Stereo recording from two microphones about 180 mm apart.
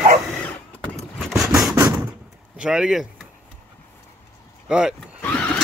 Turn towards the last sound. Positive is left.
turn(degrees=5)  # may be behind; listen again after turning